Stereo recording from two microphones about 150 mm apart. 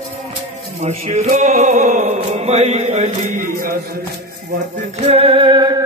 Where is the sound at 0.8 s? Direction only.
50° right (ahead or behind); by 3.7 s 70° right (ahead or behind).